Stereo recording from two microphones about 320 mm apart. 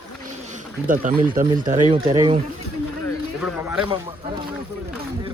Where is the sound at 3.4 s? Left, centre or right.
Centre.